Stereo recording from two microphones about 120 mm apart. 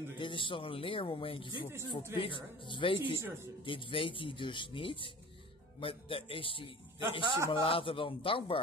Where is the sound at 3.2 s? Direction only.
20° right (ahead or behind).